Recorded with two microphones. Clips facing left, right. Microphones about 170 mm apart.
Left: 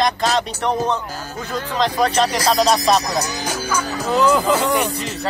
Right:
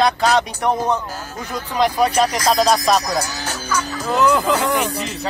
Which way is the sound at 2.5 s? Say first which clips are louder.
Left 1 dB; centre (ahead or behind).